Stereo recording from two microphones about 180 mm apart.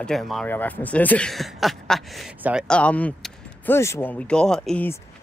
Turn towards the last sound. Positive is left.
turn(degrees=10)  # may be behind; listen again after turning